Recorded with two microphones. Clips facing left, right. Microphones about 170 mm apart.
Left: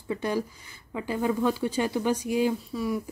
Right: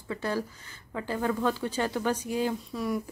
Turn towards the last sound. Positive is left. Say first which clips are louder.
# left 2 dB
turn(degrees=0)  # may be behind; listen again after turning